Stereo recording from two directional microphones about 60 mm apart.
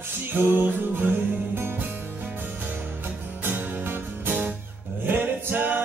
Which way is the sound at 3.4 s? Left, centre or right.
Right.